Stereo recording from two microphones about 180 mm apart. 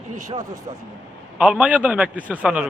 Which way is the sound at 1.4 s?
5° right (ahead or behind).